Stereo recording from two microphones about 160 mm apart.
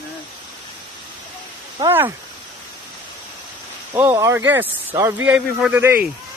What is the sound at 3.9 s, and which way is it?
Speech, 15° right (ahead or behind).